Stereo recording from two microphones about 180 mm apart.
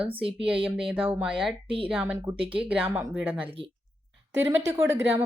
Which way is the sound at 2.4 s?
30° right (ahead or behind).